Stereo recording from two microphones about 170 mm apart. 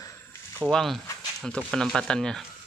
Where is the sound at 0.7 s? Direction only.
Centre (ahead or behind).